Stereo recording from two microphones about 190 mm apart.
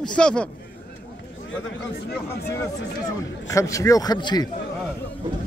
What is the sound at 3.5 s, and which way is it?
Speech, 15° left (ahead or behind).